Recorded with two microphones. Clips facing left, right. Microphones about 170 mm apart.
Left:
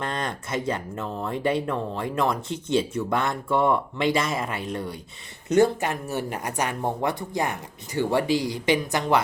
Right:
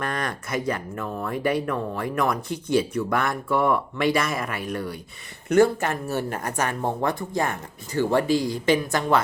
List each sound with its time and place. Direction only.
0.0 s speech: 25° left (ahead or behind)